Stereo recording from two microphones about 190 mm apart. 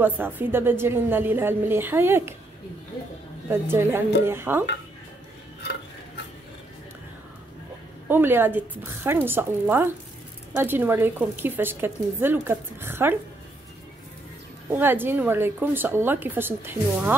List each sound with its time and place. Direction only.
0.0 s a woman's voice: 10° right (ahead or behind)
3.4 s a woman's voice: 15° right (ahead or behind)
5.6 s stir: 60° left (ahead or behind)
8.1 s a woman's voice: 10° right (ahead or behind)
14.7 s a woman's voice: 10° right (ahead or behind)